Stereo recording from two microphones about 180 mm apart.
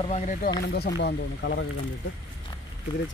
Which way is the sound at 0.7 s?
60° left (ahead or behind).